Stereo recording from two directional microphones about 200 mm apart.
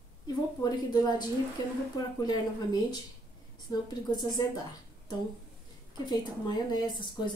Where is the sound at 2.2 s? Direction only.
20° left (ahead or behind).